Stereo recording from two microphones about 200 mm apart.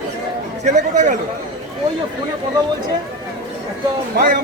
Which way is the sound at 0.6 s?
40° right (ahead or behind).